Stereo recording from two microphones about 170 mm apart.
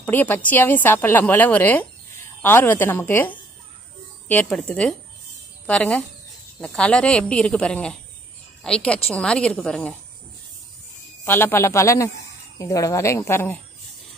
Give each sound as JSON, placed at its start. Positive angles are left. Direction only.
{"t": 0.0, "sound": "a woman's voice", "side_deg": 10}
{"t": 11.2, "sound": "a woman's voice", "side_deg": 15}